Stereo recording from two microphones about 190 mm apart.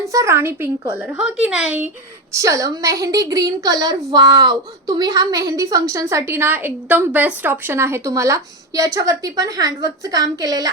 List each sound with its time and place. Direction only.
0.0 s a woman's voice: 15° right (ahead or behind)
2.3 s a woman's voice: 15° right (ahead or behind)